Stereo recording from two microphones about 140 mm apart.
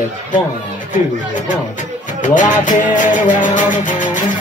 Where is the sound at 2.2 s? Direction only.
65° left (ahead or behind).